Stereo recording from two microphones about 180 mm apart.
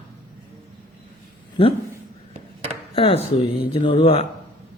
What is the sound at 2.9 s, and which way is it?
Speech, 30° left (ahead or behind).